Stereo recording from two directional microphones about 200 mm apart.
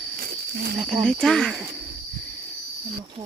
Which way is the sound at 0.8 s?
Centre (ahead or behind).